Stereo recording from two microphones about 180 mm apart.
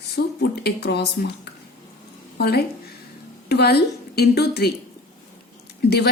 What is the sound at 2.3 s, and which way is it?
A woman's voice, 65° left (ahead or behind).